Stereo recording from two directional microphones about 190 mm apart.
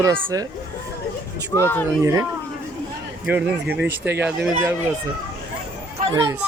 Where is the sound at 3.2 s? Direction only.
10° right (ahead or behind).